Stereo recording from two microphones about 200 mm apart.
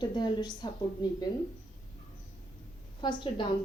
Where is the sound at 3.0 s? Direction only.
25° left (ahead or behind).